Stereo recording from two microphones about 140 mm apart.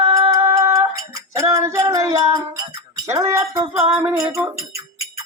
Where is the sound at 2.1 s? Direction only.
30° right (ahead or behind).